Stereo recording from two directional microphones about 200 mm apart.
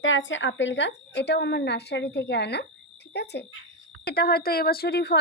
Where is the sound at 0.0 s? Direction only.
70° left (ahead or behind).